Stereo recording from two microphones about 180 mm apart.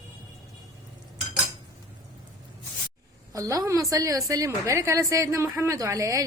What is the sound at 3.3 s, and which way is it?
A woman's voice, 20° right (ahead or behind).